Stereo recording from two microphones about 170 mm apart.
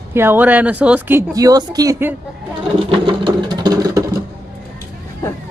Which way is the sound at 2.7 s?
30° right (ahead or behind).